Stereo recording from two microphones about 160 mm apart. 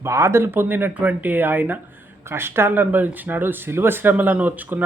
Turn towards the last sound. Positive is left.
turn(degrees=-10)  # may be behind; listen again after turning